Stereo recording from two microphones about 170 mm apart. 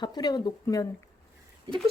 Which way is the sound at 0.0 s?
25° left (ahead or behind).